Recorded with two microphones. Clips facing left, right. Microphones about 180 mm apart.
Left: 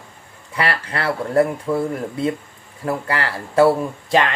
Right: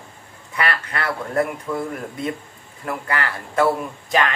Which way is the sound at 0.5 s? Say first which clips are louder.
Left 2 dB; 30° left (ahead or behind).